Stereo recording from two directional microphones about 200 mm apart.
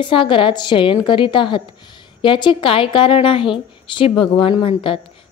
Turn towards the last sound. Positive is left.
turn(degrees=25)  # may be behind; listen again after turning